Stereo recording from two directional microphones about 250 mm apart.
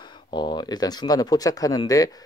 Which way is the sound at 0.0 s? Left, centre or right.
Centre.